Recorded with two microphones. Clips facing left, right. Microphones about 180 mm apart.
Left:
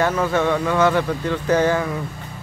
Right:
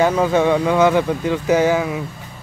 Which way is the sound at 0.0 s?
15° right (ahead or behind).